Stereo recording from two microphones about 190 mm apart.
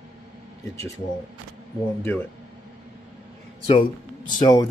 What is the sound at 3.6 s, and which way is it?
Speech, 30° left (ahead or behind).